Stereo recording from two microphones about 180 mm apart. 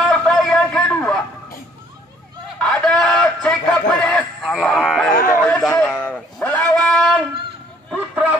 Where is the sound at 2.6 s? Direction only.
5° left (ahead or behind).